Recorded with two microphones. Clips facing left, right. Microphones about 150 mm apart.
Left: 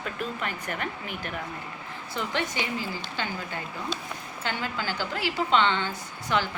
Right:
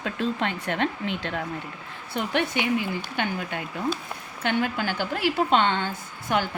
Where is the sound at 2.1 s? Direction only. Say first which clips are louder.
Right 4 dB; 65° right (ahead or behind).